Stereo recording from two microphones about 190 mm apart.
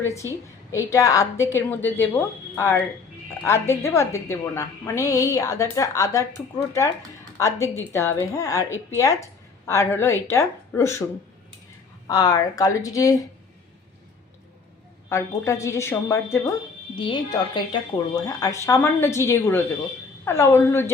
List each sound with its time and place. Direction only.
0.0 s a woman's voice: 15° left (ahead or behind)
7.3 s a woman's voice: 15° left (ahead or behind)
12.0 s speech: 20° left (ahead or behind)
15.1 s a woman's voice: 15° left (ahead or behind)
16.9 s a woman's voice: 25° left (ahead or behind)